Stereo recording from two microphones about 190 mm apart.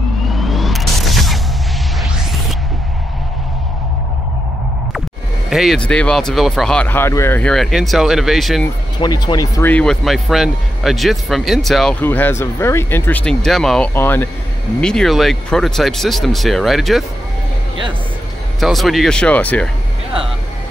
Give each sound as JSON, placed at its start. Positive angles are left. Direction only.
{"t": 0.3, "sound": "vehicle", "side_deg": 0}
{"t": 5.5, "sound": "speech", "side_deg": 0}
{"t": 9.0, "sound": "speech", "side_deg": 20}
{"t": 9.7, "sound": "speech", "side_deg": 5}
{"t": 18.6, "sound": "speech", "side_deg": 0}